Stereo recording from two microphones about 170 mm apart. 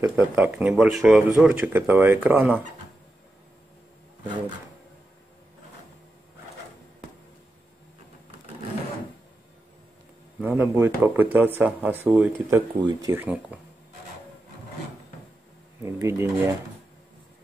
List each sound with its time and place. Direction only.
0.1 s speech: 10° right (ahead or behind)
10.4 s speech: 10° right (ahead or behind)
15.8 s speech: 15° right (ahead or behind)